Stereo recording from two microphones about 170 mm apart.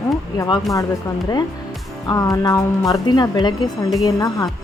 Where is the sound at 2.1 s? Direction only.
20° left (ahead or behind).